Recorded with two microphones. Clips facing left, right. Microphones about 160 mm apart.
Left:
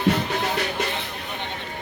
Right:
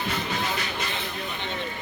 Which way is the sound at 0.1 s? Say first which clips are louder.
Left 7 dB; 65° left (ahead or behind).